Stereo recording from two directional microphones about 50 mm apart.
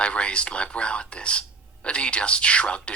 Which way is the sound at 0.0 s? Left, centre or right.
Left.